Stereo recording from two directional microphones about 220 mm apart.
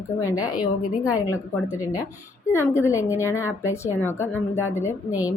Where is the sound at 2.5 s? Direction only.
10° left (ahead or behind).